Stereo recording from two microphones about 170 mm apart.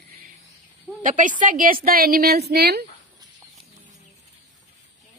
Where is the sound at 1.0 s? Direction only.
50° right (ahead or behind); by 2.8 s 70° right (ahead or behind).